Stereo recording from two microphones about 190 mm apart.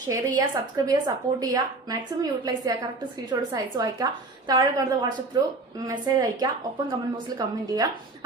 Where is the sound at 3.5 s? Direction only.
20° right (ahead or behind).